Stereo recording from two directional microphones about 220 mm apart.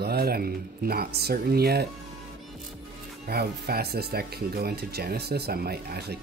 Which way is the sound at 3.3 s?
45° right (ahead or behind).